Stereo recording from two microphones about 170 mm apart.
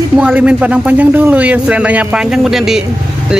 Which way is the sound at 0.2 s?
5° right (ahead or behind).